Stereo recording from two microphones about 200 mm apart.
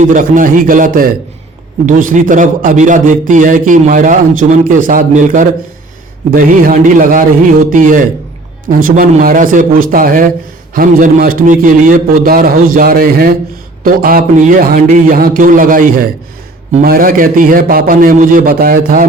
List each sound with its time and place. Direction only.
0.0 s a man's voice: 40° right (ahead or behind)